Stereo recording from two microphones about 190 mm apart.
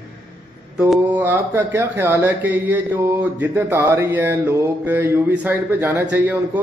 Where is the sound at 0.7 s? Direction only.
Centre (ahead or behind).